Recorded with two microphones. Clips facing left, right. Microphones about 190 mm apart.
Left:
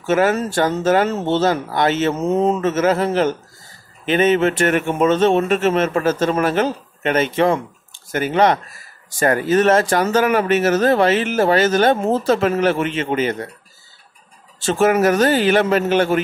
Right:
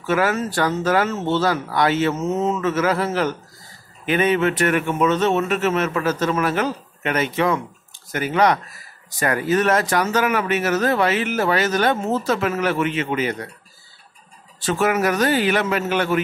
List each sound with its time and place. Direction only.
0.0 s speech: 25° left (ahead or behind)
14.6 s speech: 30° left (ahead or behind)